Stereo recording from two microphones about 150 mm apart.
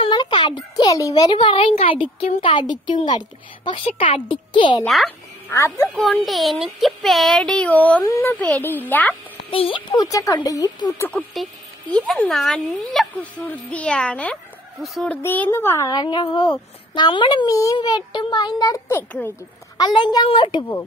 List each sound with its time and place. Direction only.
0.0 s a sound: 30° left (ahead or behind)
3.6 s a child's voice: 35° left (ahead or behind)
4.8 s speech: centre (ahead or behind)
5.5 s speech: 20° left (ahead or behind)
5.9 s speech: 5° left (ahead or behind)
9.5 s speech: 35° left (ahead or behind)
11.0 s speech: 10° left (ahead or behind)
15.9 s speech: 30° left (ahead or behind)
18.9 s speech: 15° left (ahead or behind)
19.8 s a child's voice: 30° left (ahead or behind)